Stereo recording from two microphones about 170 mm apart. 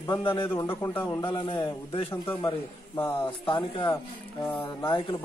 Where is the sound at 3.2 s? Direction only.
30° left (ahead or behind).